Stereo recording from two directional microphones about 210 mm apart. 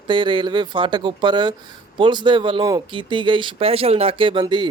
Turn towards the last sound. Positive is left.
turn(degrees=-20)  # may be behind; listen again after turning